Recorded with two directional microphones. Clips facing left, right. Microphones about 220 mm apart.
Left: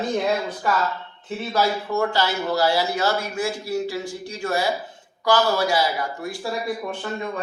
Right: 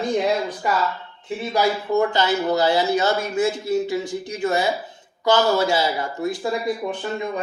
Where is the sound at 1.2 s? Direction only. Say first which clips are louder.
Right 2 dB; 15° right (ahead or behind).